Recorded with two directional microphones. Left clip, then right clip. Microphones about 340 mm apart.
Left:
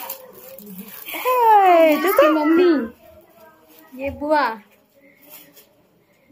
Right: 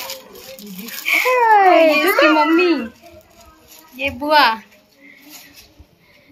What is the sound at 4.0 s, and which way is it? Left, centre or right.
Speech, centre.